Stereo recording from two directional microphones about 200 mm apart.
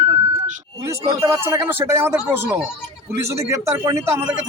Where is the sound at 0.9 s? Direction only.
15° right (ahead or behind).